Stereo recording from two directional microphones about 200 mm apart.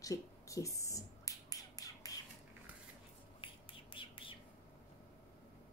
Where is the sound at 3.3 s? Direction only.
25° left (ahead or behind).